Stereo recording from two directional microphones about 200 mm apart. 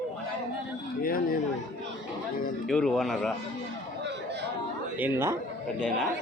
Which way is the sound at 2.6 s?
5° left (ahead or behind).